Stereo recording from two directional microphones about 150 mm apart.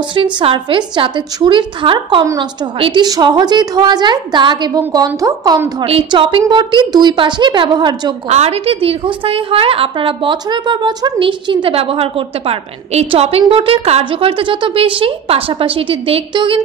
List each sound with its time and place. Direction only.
0.1 s a woman's voice: 35° right (ahead or behind)
5.9 s a woman's voice: 35° right (ahead or behind)
8.3 s a woman's voice: 45° right (ahead or behind)